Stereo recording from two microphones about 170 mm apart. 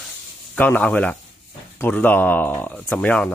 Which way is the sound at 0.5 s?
10° left (ahead or behind).